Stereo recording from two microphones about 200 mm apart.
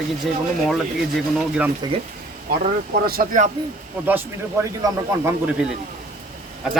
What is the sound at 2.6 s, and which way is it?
Speech, 45° right (ahead or behind).